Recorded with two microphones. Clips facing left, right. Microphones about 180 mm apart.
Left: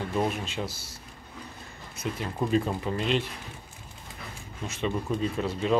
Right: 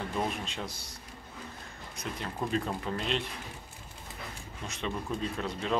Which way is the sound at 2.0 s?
5° left (ahead or behind).